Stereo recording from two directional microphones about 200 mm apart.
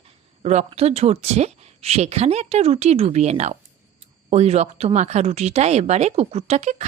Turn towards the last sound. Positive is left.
turn(degrees=-35)  # may be behind; listen again after turning